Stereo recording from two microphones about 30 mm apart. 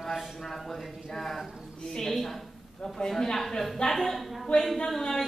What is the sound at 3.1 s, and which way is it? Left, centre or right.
Speech, centre.